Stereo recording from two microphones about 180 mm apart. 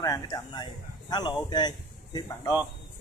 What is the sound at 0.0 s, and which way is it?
Speech, 20° left (ahead or behind).